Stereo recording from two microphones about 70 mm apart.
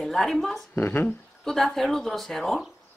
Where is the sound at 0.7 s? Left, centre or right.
Left.